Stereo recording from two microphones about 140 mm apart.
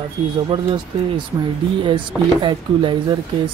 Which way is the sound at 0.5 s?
35° right (ahead or behind).